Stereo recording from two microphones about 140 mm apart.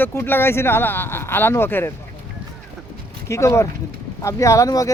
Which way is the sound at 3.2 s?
20° left (ahead or behind).